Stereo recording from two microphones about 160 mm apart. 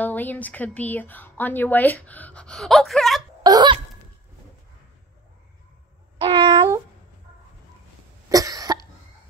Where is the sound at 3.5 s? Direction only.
25° right (ahead or behind).